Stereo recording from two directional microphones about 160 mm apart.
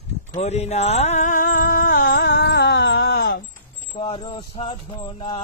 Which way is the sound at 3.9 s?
30° left (ahead or behind).